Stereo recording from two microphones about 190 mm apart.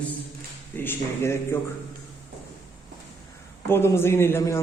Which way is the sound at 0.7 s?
10° left (ahead or behind).